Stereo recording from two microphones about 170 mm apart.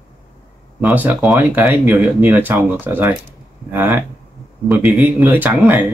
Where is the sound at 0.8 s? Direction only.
10° right (ahead or behind).